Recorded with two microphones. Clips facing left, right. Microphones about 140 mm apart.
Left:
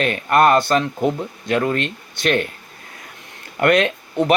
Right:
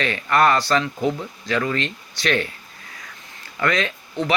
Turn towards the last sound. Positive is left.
turn(degrees=60)  # may be behind; listen again after turning